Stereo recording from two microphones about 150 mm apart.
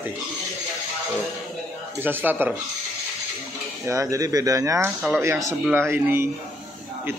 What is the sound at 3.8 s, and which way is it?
A man's voice, 20° right (ahead or behind).